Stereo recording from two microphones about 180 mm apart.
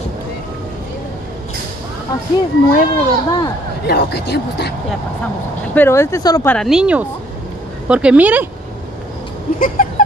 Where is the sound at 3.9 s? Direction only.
65° left (ahead or behind).